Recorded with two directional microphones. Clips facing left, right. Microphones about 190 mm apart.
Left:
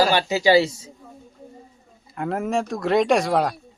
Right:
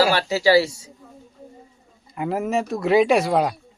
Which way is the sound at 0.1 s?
15° left (ahead or behind).